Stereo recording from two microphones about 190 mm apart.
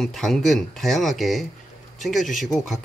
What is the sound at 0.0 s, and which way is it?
Speech, centre (ahead or behind).